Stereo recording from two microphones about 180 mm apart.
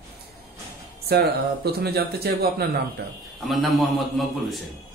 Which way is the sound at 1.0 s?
60° right (ahead or behind).